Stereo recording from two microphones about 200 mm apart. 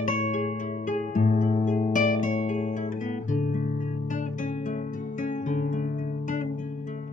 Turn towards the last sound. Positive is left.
turn(degrees=40)  # may be behind; listen again after turning